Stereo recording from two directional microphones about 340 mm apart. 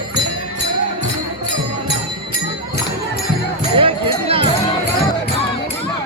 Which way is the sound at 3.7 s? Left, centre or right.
Centre.